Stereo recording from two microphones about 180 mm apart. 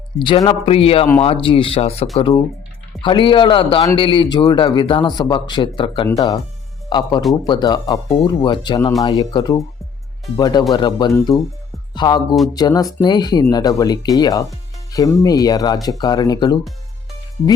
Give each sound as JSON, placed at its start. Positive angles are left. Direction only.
{"t": 0.2, "sound": "a man's voice", "side_deg": 25}
{"t": 7.4, "sound": "a man's voice", "side_deg": 25}